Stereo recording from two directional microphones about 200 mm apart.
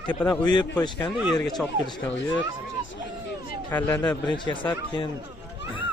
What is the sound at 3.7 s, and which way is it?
Speech, 10° left (ahead or behind).